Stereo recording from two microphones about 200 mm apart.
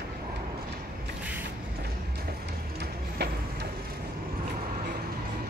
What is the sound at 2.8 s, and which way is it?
Printer, 55° right (ahead or behind).